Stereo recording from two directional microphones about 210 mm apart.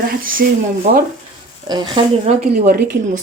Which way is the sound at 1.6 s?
20° right (ahead or behind).